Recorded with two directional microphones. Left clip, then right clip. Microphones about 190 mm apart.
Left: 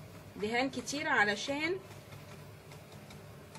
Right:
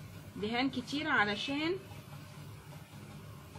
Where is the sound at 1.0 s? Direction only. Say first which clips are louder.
Left 1 dB; 10° right (ahead or behind).